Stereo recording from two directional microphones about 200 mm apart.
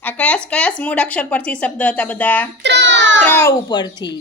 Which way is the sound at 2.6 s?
60° right (ahead or behind).